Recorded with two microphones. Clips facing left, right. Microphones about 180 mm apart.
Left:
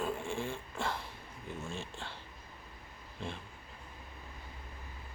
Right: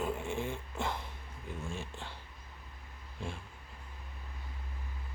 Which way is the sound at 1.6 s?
15° right (ahead or behind).